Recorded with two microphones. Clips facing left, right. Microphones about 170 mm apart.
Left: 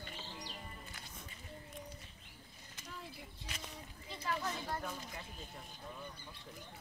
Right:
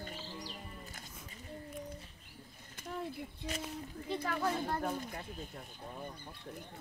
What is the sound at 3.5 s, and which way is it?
Speech, 50° right (ahead or behind).